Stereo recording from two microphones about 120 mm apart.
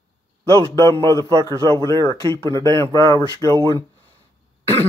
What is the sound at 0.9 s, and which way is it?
Speech, 45° right (ahead or behind).